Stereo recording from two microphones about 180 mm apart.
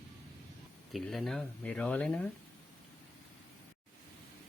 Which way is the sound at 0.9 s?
Centre (ahead or behind).